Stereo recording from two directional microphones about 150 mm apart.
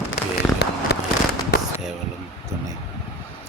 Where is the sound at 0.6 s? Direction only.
90° left.